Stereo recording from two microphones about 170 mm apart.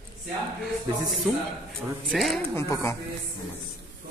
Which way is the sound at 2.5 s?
15° left (ahead or behind).